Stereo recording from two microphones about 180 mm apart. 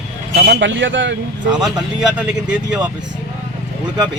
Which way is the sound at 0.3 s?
70° right (ahead or behind).